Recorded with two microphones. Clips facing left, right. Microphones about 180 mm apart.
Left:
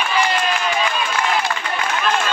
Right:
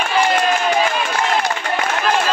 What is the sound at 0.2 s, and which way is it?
Run, 40° right (ahead or behind).